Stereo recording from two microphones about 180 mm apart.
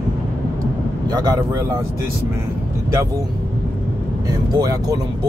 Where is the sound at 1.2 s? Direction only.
20° right (ahead or behind).